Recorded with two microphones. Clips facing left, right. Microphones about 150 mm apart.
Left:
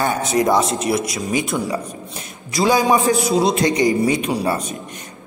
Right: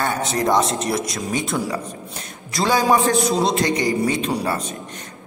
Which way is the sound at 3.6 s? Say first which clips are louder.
Left 3 dB; 20° left (ahead or behind).